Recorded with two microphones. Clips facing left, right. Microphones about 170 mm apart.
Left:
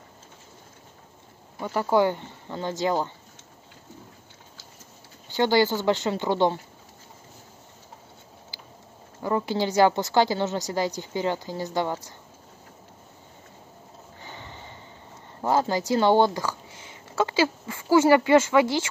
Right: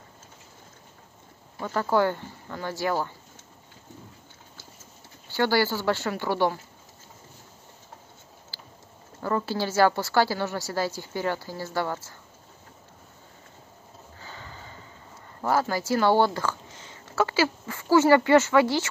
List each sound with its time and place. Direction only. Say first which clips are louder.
1.6 s a woman's voice: left 2 dB; 15° left (ahead or behind)
5.3 s a woman's voice: left 3 dB; 20° left (ahead or behind)
8.5 s vehicle: even; 15° left (ahead or behind)
9.2 s a woman's voice: left 2 dB; 15° left (ahead or behind)
14.2 s sniff: left 1 dB; 20° left (ahead or behind)
15.4 s speech: left 2 dB; 20° left (ahead or behind)